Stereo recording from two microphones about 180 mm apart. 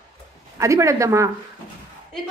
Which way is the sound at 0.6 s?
15° right (ahead or behind).